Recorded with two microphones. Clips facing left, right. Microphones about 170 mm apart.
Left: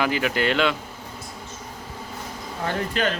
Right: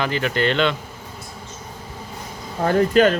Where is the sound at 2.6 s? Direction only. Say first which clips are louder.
Right 10 dB; 45° right (ahead or behind).